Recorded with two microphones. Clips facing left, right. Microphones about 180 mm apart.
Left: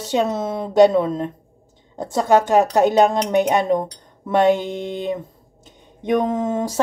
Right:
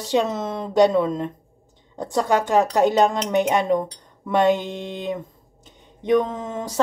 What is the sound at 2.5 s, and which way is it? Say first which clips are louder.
Speech: left 3 dB; 20° left (ahead or behind).